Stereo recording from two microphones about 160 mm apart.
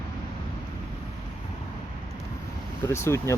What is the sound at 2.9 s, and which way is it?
Speech, 15° left (ahead or behind).